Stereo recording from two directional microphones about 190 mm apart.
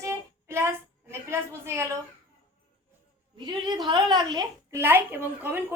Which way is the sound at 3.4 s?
25° right (ahead or behind).